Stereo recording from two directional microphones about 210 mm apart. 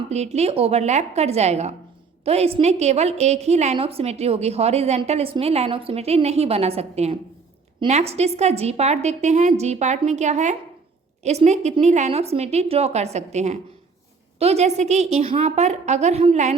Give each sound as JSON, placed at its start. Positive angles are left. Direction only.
{"t": 0.1, "sound": "a woman's voice", "side_deg": -30}